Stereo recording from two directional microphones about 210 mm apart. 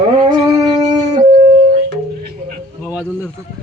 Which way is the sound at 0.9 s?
35° right (ahead or behind).